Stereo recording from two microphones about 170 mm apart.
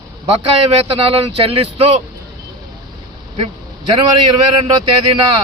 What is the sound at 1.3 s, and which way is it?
Speech, 35° right (ahead or behind).